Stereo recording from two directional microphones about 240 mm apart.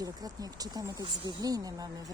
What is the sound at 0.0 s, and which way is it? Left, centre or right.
Speech, centre.